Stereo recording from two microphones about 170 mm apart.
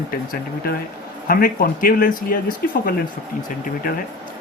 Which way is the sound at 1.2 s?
55° left (ahead or behind).